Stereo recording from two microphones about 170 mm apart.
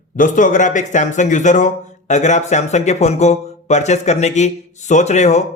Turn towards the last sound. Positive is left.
turn(degrees=40)  # may be behind; listen again after turning